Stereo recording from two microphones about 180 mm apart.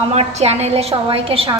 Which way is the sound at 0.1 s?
35° right (ahead or behind).